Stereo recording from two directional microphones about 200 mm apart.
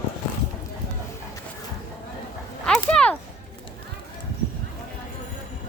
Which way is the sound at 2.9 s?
5° left (ahead or behind).